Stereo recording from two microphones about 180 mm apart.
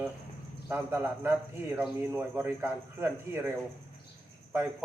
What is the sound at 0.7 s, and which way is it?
Speech, 10° right (ahead or behind).